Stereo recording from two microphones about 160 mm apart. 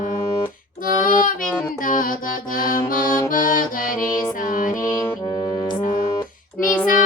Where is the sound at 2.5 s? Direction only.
60° left (ahead or behind).